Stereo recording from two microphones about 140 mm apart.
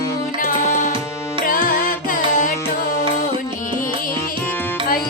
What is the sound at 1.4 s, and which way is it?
Music, 90° left.